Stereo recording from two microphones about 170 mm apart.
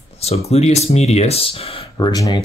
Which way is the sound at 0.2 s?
35° left (ahead or behind).